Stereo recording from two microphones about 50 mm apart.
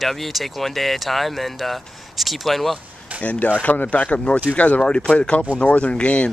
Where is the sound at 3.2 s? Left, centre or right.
Left.